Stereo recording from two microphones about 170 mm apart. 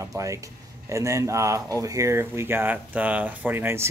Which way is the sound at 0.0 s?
20° right (ahead or behind).